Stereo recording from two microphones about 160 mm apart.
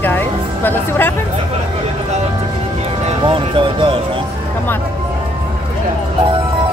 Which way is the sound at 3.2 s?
35° right (ahead or behind).